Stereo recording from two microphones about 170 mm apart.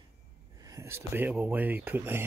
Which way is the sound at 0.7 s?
15° right (ahead or behind).